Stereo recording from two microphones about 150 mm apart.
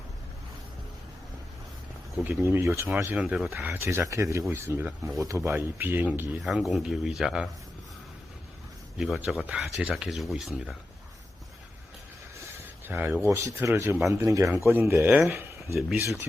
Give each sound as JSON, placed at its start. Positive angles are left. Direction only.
{"t": 2.1, "sound": "speech", "side_deg": -15}
{"t": 6.4, "sound": "speech", "side_deg": 0}
{"t": 9.0, "sound": "speech", "side_deg": 0}
{"t": 12.5, "sound": "a sound", "side_deg": -10}
{"t": 13.2, "sound": "speech", "side_deg": -15}